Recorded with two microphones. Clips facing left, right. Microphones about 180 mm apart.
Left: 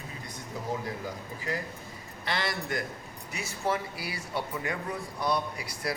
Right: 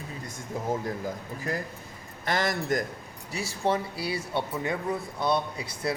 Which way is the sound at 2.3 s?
45° right (ahead or behind).